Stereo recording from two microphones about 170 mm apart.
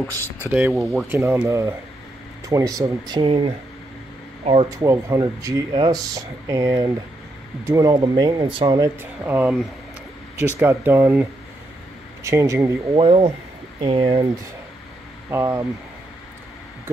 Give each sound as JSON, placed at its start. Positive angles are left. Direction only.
{"t": 0.1, "sound": "speech", "side_deg": 15}
{"t": 0.5, "sound": "speech", "side_deg": -10}
{"t": 4.6, "sound": "speech", "side_deg": -20}
{"t": 9.2, "sound": "speech", "side_deg": -10}
{"t": 10.6, "sound": "speech", "side_deg": -10}
{"t": 13.0, "sound": "speech", "side_deg": -30}
{"t": 15.2, "sound": "speech", "side_deg": -15}